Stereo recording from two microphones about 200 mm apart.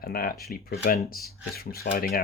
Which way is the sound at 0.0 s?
45° left (ahead or behind).